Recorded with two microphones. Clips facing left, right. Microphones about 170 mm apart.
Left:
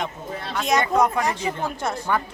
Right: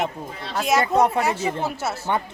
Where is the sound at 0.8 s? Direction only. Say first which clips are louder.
Right 1 dB; 30° right (ahead or behind).